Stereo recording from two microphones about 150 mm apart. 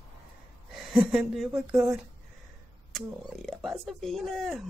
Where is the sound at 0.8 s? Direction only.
Centre (ahead or behind).